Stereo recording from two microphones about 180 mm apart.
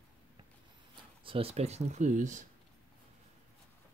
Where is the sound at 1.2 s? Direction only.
30° right (ahead or behind).